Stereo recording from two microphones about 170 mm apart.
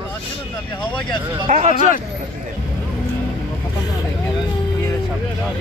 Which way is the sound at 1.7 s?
50° left (ahead or behind).